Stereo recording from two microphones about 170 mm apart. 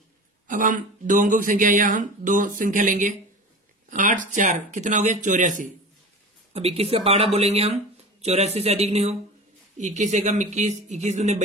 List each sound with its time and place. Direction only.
0.5 s speech: 50° right (ahead or behind)
6.5 s speech: 35° right (ahead or behind)